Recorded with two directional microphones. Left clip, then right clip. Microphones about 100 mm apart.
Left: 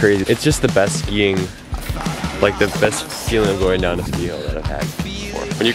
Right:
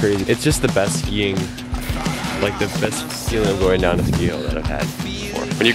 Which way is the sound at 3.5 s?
10° left (ahead or behind).